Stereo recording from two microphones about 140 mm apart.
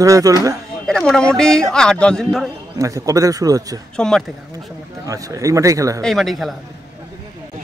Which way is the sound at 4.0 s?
5° left (ahead or behind).